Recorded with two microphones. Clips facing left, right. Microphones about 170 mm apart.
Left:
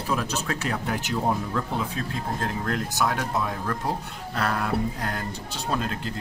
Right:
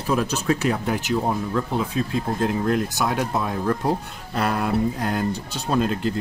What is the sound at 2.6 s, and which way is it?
Speech, 15° right (ahead or behind).